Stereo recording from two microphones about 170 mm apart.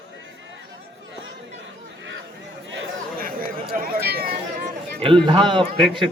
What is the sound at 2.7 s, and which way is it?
Chatter, 90° right.